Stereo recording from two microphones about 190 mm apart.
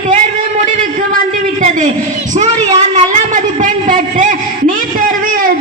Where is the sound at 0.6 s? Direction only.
45° right (ahead or behind).